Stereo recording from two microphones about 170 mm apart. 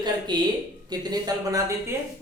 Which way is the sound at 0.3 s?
25° right (ahead or behind).